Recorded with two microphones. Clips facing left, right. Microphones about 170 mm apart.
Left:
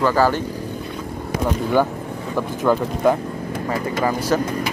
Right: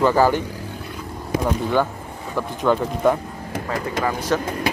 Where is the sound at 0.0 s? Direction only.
15° right (ahead or behind).